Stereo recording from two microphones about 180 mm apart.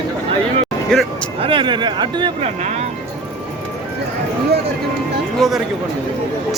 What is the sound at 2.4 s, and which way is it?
Speech, 35° right (ahead or behind).